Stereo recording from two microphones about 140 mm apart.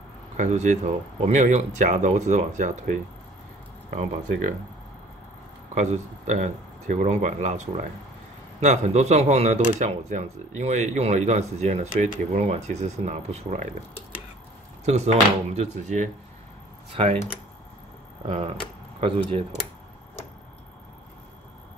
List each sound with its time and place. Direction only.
0.4 s speech: 55° right (ahead or behind)
5.8 s speech: 55° right (ahead or behind)
14.9 s speech: 50° right (ahead or behind)
16.9 s speech: 40° right (ahead or behind)
18.2 s speech: 40° right (ahead or behind)